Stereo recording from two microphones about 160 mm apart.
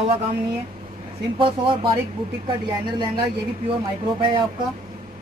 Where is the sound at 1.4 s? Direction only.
35° right (ahead or behind).